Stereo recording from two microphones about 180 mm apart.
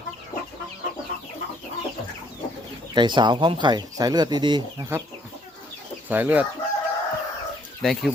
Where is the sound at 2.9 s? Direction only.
25° right (ahead or behind).